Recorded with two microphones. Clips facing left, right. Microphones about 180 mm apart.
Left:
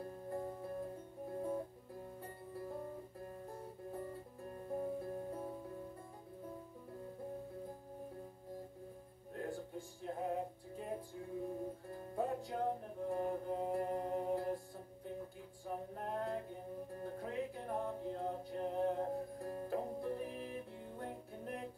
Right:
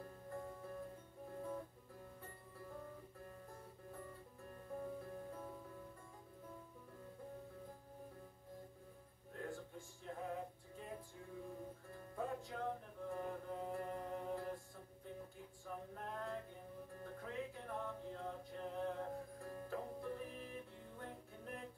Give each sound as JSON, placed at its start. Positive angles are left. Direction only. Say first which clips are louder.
{"t": 0.0, "sound": "music", "louder": "left 7 dB", "side_deg": 35}
{"t": 9.3, "sound": "music", "louder": "left 5 dB", "side_deg": 35}
{"t": 15.6, "sound": "a sound", "louder": "left 6 dB", "side_deg": 35}
{"t": 16.9, "sound": "music", "louder": "left 5 dB", "side_deg": 35}